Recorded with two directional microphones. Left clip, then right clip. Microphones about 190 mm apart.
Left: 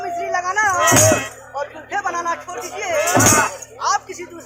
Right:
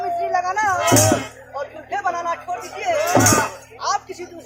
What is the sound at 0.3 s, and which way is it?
Music, 15° left (ahead or behind).